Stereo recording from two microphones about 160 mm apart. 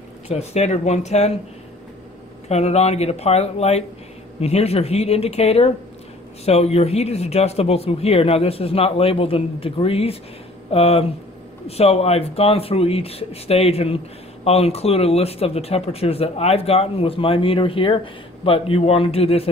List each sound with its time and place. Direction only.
0.3 s speech: 45° left (ahead or behind)
2.4 s speech: 40° left (ahead or behind)